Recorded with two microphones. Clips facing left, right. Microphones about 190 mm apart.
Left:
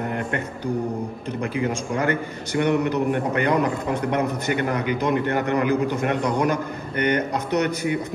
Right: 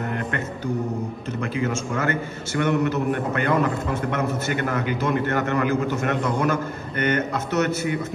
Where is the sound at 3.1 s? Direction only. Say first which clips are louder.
Left 2 dB; 50° right (ahead or behind).